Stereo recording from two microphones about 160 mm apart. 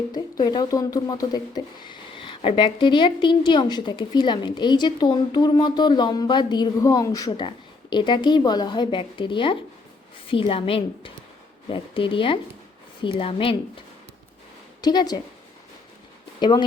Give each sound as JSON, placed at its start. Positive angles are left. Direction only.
{"t": 0.1, "sound": "a woman's voice", "side_deg": 25}
{"t": 14.8, "sound": "a woman's voice", "side_deg": 25}
{"t": 16.4, "sound": "speech", "side_deg": 30}